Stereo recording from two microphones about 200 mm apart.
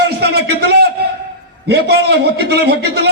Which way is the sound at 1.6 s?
55° right (ahead or behind).